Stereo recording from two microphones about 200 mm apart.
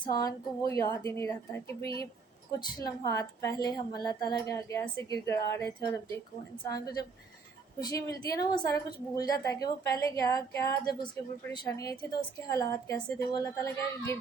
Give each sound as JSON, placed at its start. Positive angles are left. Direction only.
{"t": 0.0, "sound": "a woman's voice", "side_deg": 20}